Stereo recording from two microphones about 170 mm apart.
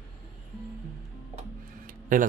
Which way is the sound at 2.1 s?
50° right (ahead or behind).